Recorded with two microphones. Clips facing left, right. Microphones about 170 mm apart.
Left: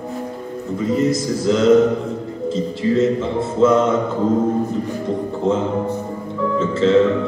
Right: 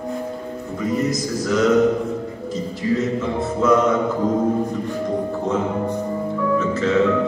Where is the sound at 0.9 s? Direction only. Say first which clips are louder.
Left 3 dB; 25° left (ahead or behind).